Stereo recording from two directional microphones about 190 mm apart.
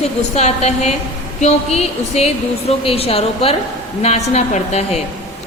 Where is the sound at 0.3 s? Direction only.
35° left (ahead or behind).